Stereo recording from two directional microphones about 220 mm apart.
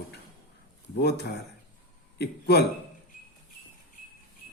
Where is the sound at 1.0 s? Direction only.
50° left (ahead or behind).